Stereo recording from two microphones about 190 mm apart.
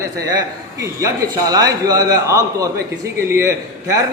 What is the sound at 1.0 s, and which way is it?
A man's voice, 20° right (ahead or behind).